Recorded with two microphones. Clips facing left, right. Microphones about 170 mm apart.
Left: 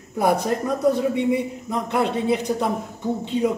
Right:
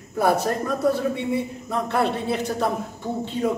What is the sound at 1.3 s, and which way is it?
Speech, 15° left (ahead or behind).